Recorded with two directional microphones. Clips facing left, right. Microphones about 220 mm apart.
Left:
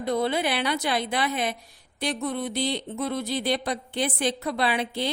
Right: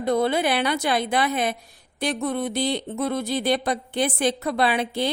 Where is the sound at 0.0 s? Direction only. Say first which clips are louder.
Right 4 dB; 50° right (ahead or behind).